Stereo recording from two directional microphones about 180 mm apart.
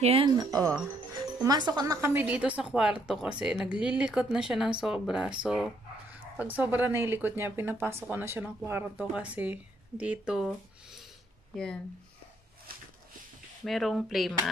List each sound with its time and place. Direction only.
0.0 s speech: 30° right (ahead or behind); by 11.8 s 5° left (ahead or behind)
13.7 s speech: centre (ahead or behind)